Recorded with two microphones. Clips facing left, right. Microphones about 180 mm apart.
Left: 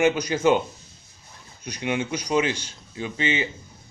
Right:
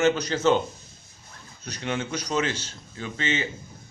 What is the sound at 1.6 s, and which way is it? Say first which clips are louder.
A man's voice: left 3 dB; 10° left (ahead or behind).